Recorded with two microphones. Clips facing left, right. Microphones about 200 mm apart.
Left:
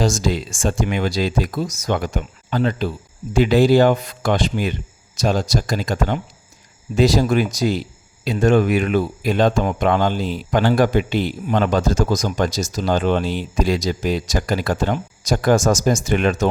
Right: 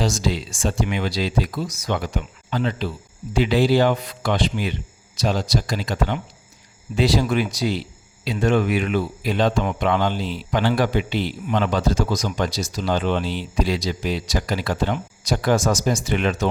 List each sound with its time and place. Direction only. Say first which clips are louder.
0.0 s speech: left 3 dB; 45° left (ahead or behind)